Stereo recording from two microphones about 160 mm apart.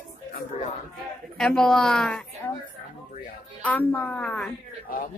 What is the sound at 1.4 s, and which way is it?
A woman's voice, 5° left (ahead or behind).